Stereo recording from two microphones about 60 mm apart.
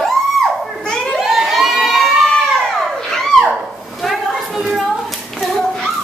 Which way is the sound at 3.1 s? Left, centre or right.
Centre.